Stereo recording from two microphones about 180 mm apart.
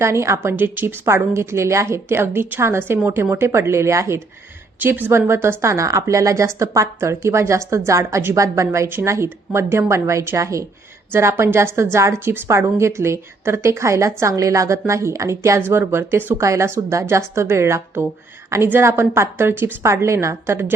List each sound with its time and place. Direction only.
0.0 s a woman's voice: 15° right (ahead or behind)